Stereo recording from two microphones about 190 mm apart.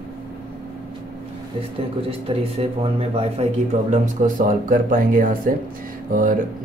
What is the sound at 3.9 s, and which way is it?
Speech, 45° right (ahead or behind).